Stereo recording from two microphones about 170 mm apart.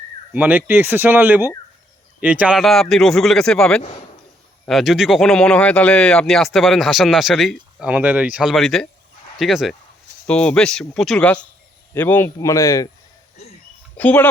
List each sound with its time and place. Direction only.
0.3 s a man's voice: 10° right (ahead or behind); by 12.9 s 20° left (ahead or behind)
13.9 s speech: 10° left (ahead or behind)